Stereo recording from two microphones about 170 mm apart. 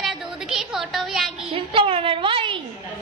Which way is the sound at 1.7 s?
30° right (ahead or behind).